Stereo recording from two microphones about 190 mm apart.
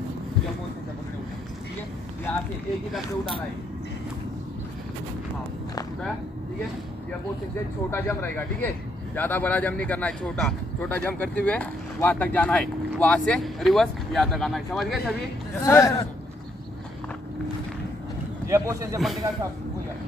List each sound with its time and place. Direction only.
7.9 s speech: 10° left (ahead or behind)
15.6 s speech: 15° left (ahead or behind)
18.5 s a man's voice: 15° right (ahead or behind)
18.9 s speech: centre (ahead or behind)